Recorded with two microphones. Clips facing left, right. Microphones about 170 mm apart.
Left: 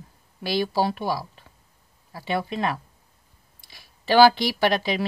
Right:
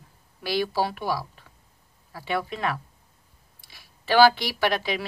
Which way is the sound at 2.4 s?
20° left (ahead or behind).